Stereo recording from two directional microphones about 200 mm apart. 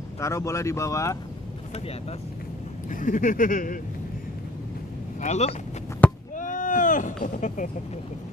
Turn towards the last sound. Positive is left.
turn(degrees=40)  # may be behind; listen again after turning